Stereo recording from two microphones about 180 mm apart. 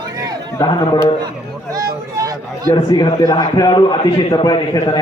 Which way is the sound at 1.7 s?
20° right (ahead or behind).